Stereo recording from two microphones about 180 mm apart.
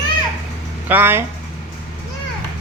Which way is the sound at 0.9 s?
10° right (ahead or behind).